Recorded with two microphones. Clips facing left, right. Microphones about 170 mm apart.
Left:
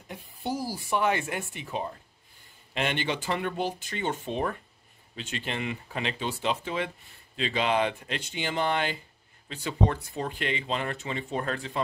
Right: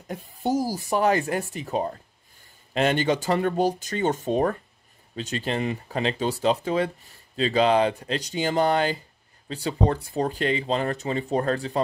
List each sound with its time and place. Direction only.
0.1 s speech: 45° right (ahead or behind)